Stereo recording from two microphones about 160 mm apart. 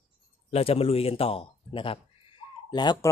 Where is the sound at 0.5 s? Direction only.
40° left (ahead or behind).